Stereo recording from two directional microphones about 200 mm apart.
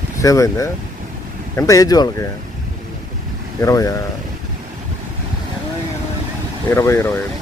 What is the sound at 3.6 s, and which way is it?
Speech, 15° left (ahead or behind).